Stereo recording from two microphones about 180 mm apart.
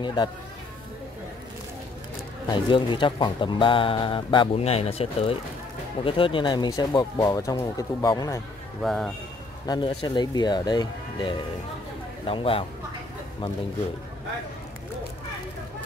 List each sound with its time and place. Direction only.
0.0 s speech: 25° left (ahead or behind)
2.5 s speech: 25° left (ahead or behind)
8.8 s speech: centre (ahead or behind)
9.7 s speech: 25° left (ahead or behind)